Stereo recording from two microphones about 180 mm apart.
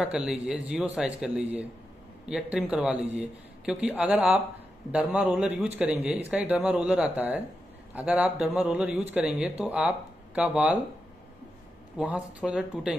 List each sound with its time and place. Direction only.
0.0 s a man's voice: 5° right (ahead or behind)
12.0 s a man's voice: 5° right (ahead or behind)